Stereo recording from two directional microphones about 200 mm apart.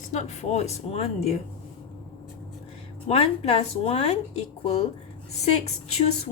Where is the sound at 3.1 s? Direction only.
30° left (ahead or behind).